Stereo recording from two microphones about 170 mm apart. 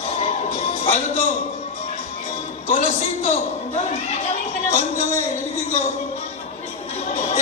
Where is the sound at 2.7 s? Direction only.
45° left (ahead or behind).